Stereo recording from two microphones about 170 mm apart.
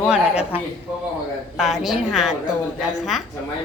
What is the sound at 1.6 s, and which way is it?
Speech, centre (ahead or behind).